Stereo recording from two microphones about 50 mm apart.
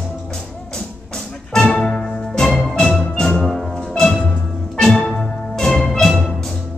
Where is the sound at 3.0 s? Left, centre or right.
Centre.